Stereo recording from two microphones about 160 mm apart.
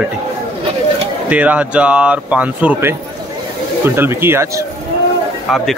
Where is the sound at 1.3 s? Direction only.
10° right (ahead or behind).